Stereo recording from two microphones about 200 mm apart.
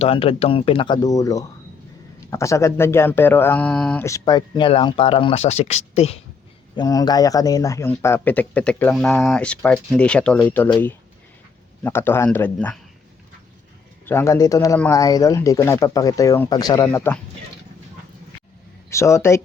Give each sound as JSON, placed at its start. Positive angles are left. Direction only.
{"t": 0.0, "sound": "speech", "side_deg": 30}
{"t": 6.7, "sound": "speech", "side_deg": 20}
{"t": 11.8, "sound": "speech", "side_deg": 10}
{"t": 14.0, "sound": "speech", "side_deg": 10}
{"t": 18.9, "sound": "speech", "side_deg": 15}